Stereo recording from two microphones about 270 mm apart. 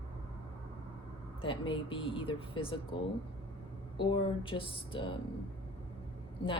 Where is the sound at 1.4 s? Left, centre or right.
Centre.